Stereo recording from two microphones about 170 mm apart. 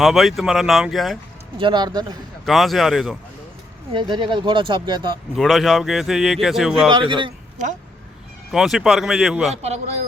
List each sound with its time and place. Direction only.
0.0 s speech: centre (ahead or behind)
1.5 s speech: 25° right (ahead or behind)
2.4 s speech: centre (ahead or behind)
3.9 s speech: 25° right (ahead or behind)
5.4 s speech: centre (ahead or behind)
6.9 s speech: 30° right (ahead or behind)
8.5 s speech: centre (ahead or behind)
9.6 s speech: 40° right (ahead or behind)